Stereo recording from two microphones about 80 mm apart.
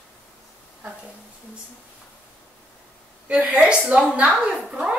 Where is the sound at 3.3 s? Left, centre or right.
Centre.